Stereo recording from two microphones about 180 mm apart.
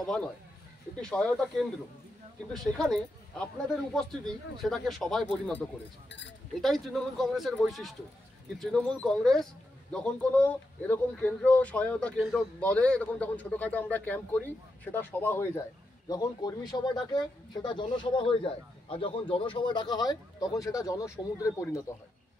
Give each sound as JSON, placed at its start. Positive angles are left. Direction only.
{"t": 1.0, "sound": "speech", "side_deg": 5}
{"t": 6.0, "sound": "speech", "side_deg": 80}
{"t": 6.6, "sound": "speech", "side_deg": 0}